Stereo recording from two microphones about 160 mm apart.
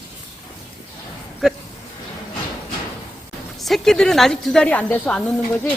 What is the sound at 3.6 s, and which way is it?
A woman's voice, centre (ahead or behind).